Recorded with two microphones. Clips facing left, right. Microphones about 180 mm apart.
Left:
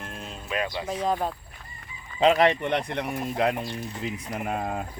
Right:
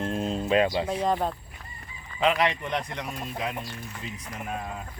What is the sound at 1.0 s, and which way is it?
Speech, centre (ahead or behind).